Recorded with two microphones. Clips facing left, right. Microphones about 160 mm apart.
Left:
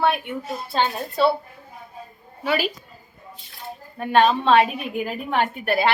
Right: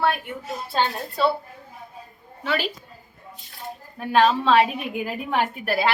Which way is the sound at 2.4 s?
10° left (ahead or behind).